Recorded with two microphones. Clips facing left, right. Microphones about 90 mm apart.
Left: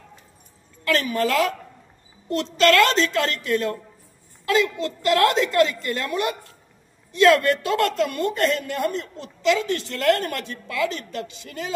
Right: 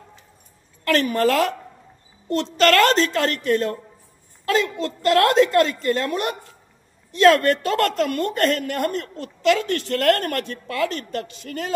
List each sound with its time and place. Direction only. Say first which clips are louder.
0.8 s a woman's voice: right 3 dB; 50° right (ahead or behind)